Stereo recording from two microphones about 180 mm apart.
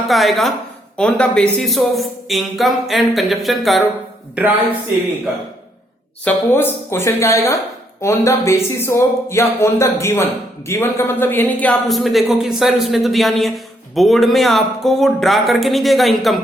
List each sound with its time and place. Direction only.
0.1 s speech: centre (ahead or behind)
6.2 s speech: 10° left (ahead or behind)